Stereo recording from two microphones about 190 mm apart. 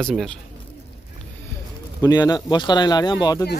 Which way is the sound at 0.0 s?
Centre (ahead or behind).